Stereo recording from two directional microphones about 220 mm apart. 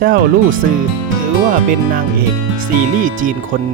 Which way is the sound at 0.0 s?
45° right (ahead or behind).